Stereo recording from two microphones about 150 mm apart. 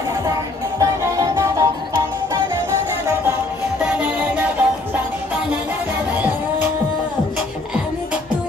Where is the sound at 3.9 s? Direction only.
10° right (ahead or behind).